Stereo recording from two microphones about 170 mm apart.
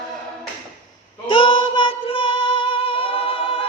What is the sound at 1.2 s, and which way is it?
Music, 30° left (ahead or behind).